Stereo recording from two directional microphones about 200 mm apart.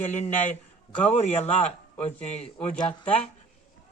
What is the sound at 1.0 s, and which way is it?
A man's voice, 35° left (ahead or behind).